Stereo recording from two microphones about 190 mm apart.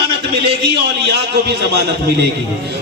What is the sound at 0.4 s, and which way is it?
A man's voice, 60° right (ahead or behind).